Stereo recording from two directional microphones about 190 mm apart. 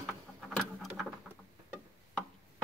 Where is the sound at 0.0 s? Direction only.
Centre (ahead or behind).